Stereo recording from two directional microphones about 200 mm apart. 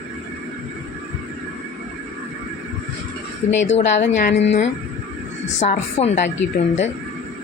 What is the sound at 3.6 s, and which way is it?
Speech, 35° left (ahead or behind).